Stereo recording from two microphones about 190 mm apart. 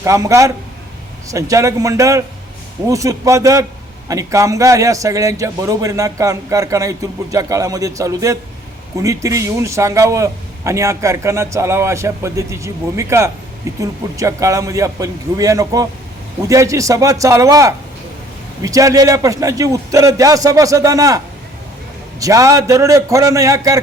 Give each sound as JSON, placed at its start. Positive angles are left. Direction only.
{"t": 0.0, "sound": "a man's voice", "side_deg": -15}
{"t": 22.2, "sound": "a man's voice", "side_deg": -15}